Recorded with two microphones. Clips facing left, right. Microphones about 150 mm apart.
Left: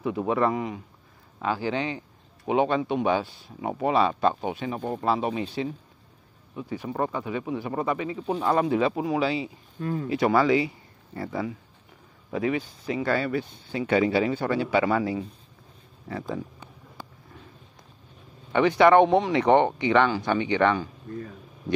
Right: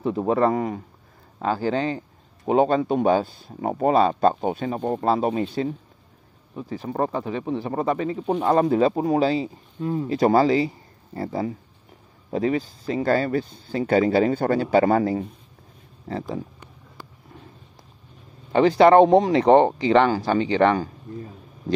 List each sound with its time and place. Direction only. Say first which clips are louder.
0.0 s speech: right 4 dB; 35° right (ahead or behind)
9.8 s speech: right 4 dB; 20° right (ahead or behind)
10.0 s speech: right 3 dB; 35° right (ahead or behind)
16.1 s speech: right 3 dB; 30° right (ahead or behind)
18.5 s speech: right 3 dB; 35° right (ahead or behind)